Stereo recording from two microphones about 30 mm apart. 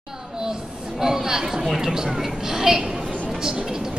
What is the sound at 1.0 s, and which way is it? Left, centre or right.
A woman's voice, centre.